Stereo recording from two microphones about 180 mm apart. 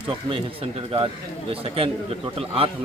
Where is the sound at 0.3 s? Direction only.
30° right (ahead or behind).